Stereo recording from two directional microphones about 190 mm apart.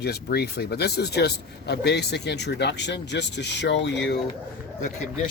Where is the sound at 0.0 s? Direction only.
55° left (ahead or behind).